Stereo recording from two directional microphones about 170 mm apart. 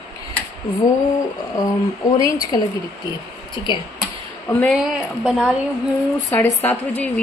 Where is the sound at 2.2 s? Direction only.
20° left (ahead or behind).